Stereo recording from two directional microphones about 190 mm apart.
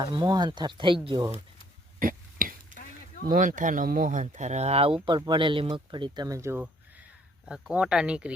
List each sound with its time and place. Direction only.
0.0 s speech: 25° right (ahead or behind)
2.0 s a sound: 45° right (ahead or behind)
3.2 s speech: 45° right (ahead or behind); by 8.3 s 5° right (ahead or behind)